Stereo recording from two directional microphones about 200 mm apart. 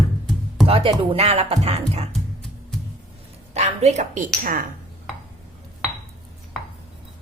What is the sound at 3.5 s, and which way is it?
Speech, 35° right (ahead or behind).